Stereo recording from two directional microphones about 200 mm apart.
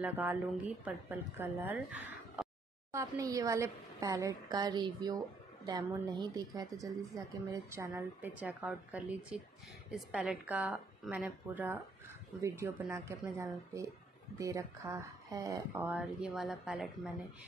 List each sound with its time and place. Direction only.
0.0 s a woman's voice: 10° right (ahead or behind)